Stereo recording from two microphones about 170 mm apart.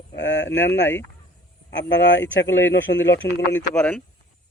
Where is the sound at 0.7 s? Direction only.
15° left (ahead or behind).